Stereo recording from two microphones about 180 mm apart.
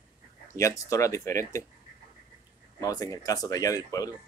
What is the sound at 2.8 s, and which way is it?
Speech, 20° left (ahead or behind).